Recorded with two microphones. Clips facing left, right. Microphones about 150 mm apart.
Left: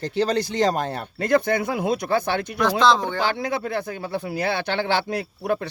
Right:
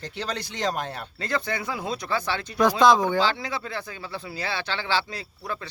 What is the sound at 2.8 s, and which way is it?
Speech, 15° right (ahead or behind).